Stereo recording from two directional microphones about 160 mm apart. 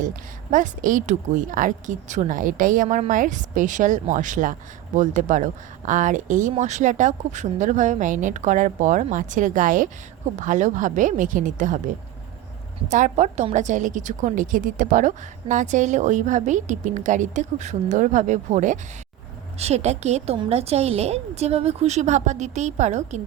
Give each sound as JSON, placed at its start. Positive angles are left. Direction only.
{"t": 0.5, "sound": "a woman's voice", "side_deg": -55}
{"t": 12.9, "sound": "a woman's voice", "side_deg": -50}